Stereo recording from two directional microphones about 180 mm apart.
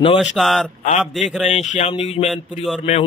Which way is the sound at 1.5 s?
40° left (ahead or behind).